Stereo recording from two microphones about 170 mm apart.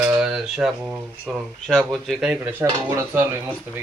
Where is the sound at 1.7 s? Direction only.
5° left (ahead or behind); by 3.8 s 15° right (ahead or behind).